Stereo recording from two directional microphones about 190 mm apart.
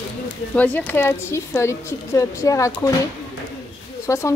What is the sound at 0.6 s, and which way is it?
Speech, 10° left (ahead or behind).